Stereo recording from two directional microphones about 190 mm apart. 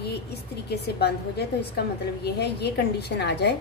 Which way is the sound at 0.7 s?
60° left (ahead or behind).